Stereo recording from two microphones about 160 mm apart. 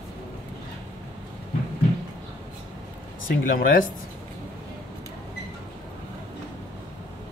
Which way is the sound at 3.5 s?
60° left (ahead or behind).